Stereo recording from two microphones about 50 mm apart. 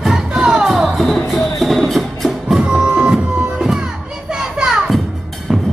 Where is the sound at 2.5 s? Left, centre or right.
Right.